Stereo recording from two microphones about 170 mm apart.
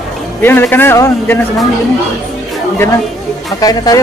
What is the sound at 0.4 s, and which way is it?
A man's voice, 10° left (ahead or behind).